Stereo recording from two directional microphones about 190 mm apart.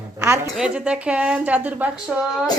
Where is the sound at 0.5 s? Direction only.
5° right (ahead or behind).